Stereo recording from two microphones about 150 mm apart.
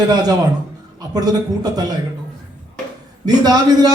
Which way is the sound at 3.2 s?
25° right (ahead or behind).